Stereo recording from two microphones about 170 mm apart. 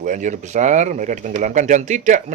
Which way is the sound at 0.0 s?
45° right (ahead or behind).